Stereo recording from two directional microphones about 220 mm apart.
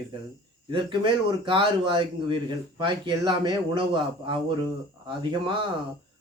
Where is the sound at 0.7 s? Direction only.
20° right (ahead or behind).